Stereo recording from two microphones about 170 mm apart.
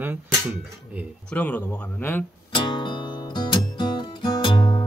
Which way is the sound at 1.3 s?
10° left (ahead or behind).